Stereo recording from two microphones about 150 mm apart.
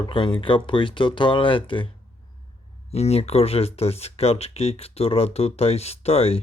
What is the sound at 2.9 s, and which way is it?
Speech, 45° left (ahead or behind).